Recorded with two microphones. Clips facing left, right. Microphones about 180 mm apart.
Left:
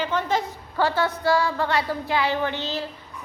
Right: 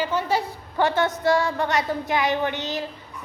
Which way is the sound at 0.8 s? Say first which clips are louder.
Right 1 dB; 20° right (ahead or behind).